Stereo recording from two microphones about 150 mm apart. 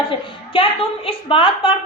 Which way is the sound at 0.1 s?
35° left (ahead or behind).